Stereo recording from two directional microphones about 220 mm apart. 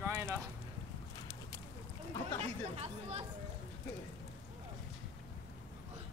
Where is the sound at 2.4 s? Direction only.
30° right (ahead or behind).